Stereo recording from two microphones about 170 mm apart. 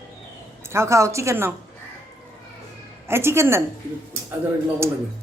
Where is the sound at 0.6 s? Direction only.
15° right (ahead or behind).